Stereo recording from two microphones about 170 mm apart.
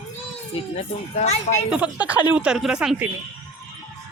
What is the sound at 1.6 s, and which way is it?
Speech, 5° right (ahead or behind).